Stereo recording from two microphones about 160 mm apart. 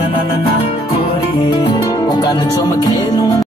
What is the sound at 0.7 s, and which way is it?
Music, 35° left (ahead or behind).